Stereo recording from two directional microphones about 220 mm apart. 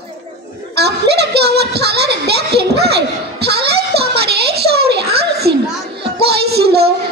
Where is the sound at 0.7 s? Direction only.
50° right (ahead or behind).